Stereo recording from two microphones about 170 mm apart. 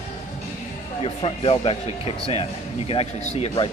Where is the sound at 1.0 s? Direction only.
35° left (ahead or behind).